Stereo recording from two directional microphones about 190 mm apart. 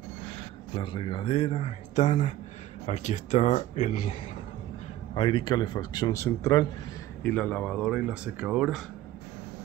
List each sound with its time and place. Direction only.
0.7 s speech: 25° left (ahead or behind); by 4.2 s 40° left (ahead or behind)
5.1 s speech: 25° left (ahead or behind); by 8.8 s 5° right (ahead or behind)